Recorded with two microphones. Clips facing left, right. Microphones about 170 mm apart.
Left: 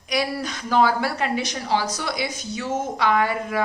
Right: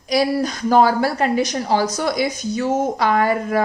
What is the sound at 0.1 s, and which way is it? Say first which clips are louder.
A woman's voice: right 7 dB; 40° right (ahead or behind).